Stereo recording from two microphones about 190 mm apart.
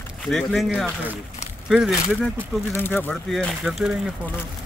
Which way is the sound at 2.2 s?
10° left (ahead or behind).